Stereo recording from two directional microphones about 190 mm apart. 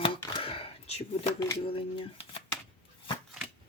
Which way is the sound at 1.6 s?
30° left (ahead or behind).